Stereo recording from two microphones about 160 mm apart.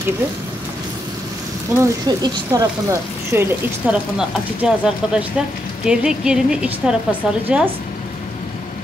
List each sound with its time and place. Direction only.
1.8 s speech: 20° right (ahead or behind)
4.2 s a woman's voice: 5° right (ahead or behind)